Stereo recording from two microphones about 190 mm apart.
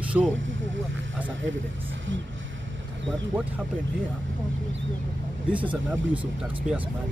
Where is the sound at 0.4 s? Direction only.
85° right.